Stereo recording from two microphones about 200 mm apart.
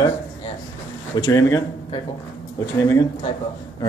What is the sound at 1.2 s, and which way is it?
Speech, 15° left (ahead or behind).